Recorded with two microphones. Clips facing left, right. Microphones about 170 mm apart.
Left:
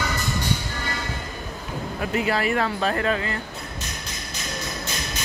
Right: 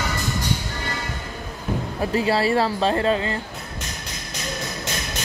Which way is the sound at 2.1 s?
30° right (ahead or behind).